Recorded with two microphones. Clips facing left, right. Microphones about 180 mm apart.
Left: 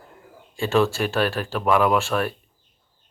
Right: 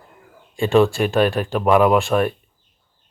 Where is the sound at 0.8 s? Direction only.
15° right (ahead or behind).